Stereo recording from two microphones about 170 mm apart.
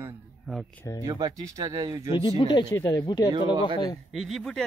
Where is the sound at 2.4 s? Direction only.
25° left (ahead or behind).